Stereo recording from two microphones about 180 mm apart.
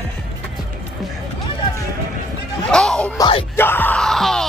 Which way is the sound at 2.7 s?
5° left (ahead or behind).